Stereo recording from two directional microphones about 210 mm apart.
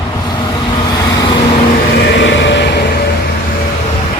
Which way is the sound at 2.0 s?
60° left (ahead or behind).